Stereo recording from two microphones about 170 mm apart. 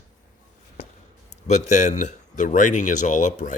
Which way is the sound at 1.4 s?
45° left (ahead or behind).